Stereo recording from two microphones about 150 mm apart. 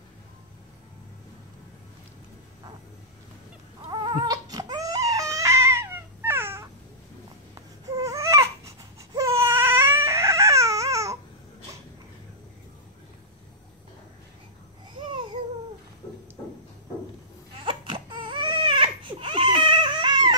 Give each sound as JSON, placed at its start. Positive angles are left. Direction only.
{"t": 3.9, "sound": "baby cry", "side_deg": -30}
{"t": 7.9, "sound": "baby cry", "side_deg": -20}
{"t": 17.6, "sound": "baby cry", "side_deg": -35}